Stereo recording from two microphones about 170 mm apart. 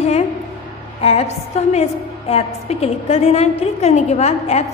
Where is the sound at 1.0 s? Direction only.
40° left (ahead or behind).